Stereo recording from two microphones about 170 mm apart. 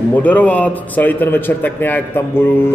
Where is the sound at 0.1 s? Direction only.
10° left (ahead or behind).